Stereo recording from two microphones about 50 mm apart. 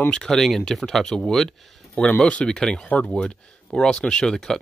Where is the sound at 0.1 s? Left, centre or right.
Centre.